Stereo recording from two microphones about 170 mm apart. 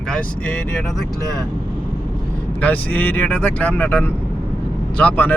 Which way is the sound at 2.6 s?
10° left (ahead or behind).